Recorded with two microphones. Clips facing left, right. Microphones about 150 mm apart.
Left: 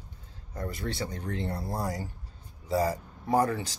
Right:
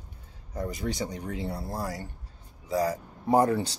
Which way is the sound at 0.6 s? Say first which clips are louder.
Right 3 dB; 15° right (ahead or behind).